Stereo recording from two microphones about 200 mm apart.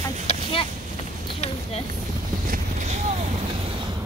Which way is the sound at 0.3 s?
30° left (ahead or behind).